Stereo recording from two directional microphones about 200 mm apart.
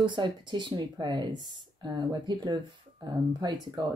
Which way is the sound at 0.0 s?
25° right (ahead or behind).